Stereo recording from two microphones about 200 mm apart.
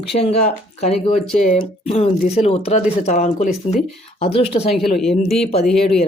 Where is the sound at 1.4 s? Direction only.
40° left (ahead or behind).